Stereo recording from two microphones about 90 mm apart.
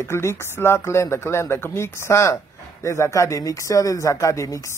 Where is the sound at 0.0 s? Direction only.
30° left (ahead or behind).